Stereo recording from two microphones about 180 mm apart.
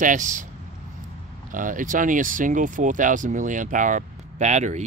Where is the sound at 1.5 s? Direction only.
45° right (ahead or behind).